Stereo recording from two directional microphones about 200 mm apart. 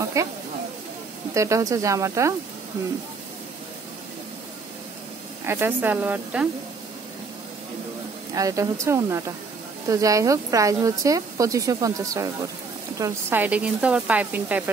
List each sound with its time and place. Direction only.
0.0 s speech: 15° right (ahead or behind)
1.3 s speech: 15° right (ahead or behind)
5.5 s speech: 10° right (ahead or behind)
8.4 s speech: 15° right (ahead or behind)